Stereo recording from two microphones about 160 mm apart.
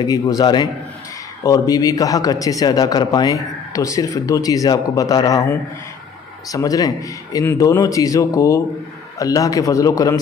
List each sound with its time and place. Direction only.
0.0 s a man's voice: 25° left (ahead or behind)